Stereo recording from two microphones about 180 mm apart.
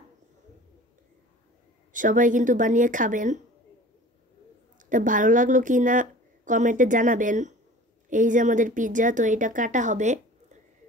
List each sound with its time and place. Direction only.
1.9 s speech: 45° right (ahead or behind)
4.8 s speech: 45° right (ahead or behind)